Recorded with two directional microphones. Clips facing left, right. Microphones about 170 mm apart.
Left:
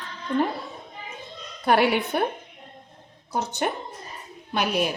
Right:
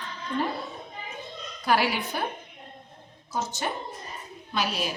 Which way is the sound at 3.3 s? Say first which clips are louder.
Left 4 dB; 60° left (ahead or behind).